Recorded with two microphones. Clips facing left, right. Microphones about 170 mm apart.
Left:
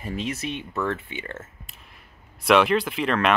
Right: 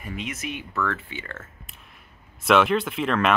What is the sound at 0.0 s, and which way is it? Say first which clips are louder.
Speech: left 3 dB; 30° left (ahead or behind).